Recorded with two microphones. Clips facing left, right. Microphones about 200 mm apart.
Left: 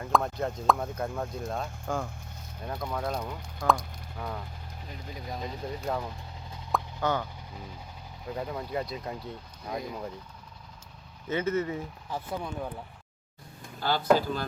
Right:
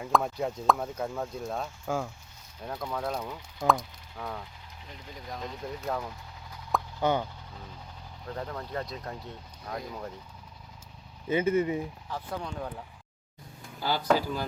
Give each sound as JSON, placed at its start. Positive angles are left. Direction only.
{"t": 0.0, "sound": "speech", "side_deg": -5}
{"t": 3.7, "sound": "sizzle", "side_deg": 0}
{"t": 5.3, "sound": "speech", "side_deg": 5}
{"t": 7.0, "sound": "speech", "side_deg": -15}
{"t": 8.3, "sound": "speech", "side_deg": 10}
{"t": 11.3, "sound": "speech", "side_deg": -10}
{"t": 12.1, "sound": "speech", "side_deg": 10}
{"t": 13.7, "sound": "speech", "side_deg": -10}